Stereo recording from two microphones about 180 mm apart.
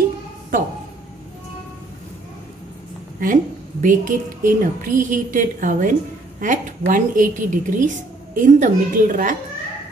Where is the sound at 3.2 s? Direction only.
45° right (ahead or behind).